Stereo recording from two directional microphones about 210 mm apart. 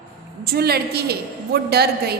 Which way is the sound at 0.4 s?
50° right (ahead or behind).